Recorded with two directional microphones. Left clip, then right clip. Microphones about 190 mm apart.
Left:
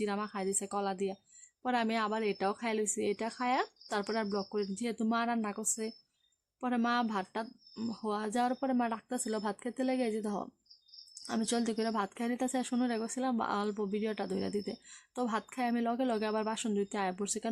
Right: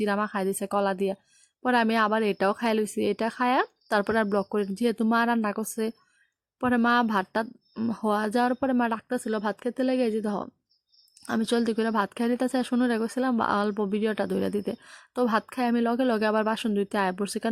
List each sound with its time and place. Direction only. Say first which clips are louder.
0.0 s a woman's voice: right 9 dB; 30° right (ahead or behind)